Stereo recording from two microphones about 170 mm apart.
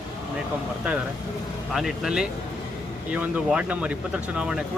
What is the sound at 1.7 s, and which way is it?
Speech, centre (ahead or behind).